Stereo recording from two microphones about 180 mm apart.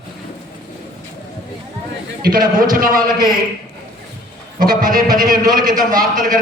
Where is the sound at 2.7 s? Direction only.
50° right (ahead or behind).